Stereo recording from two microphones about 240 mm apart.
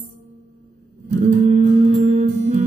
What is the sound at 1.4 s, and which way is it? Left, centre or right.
Music, right.